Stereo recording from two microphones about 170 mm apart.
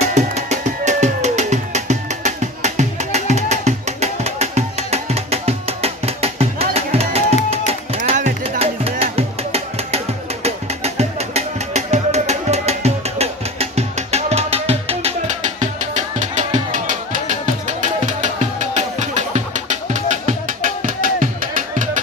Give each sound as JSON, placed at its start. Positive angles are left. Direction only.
{"t": 0.0, "sound": "music", "side_deg": -40}